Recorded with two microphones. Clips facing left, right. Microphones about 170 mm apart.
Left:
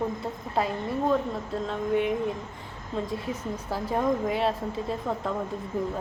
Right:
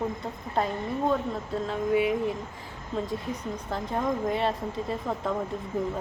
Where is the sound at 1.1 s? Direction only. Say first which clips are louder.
Left 1 dB; centre (ahead or behind).